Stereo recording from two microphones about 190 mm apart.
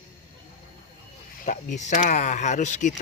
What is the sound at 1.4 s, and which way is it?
Speech, 40° left (ahead or behind).